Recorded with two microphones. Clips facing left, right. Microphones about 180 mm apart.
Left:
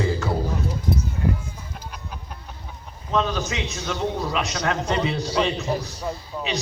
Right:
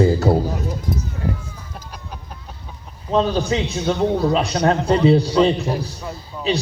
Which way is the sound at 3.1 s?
35° right (ahead or behind).